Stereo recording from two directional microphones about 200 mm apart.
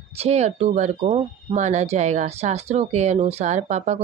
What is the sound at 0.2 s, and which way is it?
Speech, 30° right (ahead or behind).